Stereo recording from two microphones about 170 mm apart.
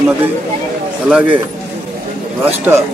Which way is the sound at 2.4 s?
10° right (ahead or behind).